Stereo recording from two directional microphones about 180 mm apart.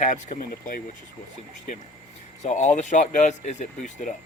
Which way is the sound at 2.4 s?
40° left (ahead or behind).